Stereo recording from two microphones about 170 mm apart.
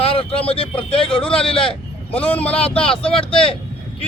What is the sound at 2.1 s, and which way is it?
Speech, 10° left (ahead or behind).